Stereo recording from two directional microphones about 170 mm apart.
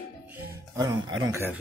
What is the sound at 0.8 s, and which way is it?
Speech, 25° right (ahead or behind).